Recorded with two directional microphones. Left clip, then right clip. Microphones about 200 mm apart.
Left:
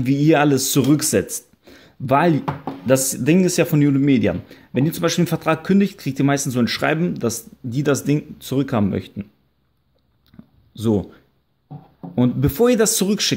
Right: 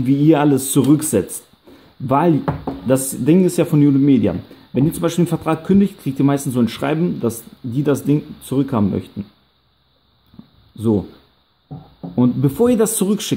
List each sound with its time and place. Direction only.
0.0 s speech: 15° left (ahead or behind)
10.7 s speech: 20° left (ahead or behind)
12.2 s speech: 15° left (ahead or behind)